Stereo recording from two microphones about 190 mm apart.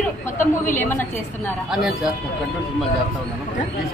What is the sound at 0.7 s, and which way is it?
Speech, 10° left (ahead or behind).